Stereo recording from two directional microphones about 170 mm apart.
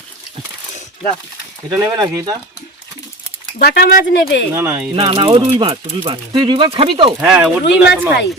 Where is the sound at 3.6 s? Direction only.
65° left (ahead or behind).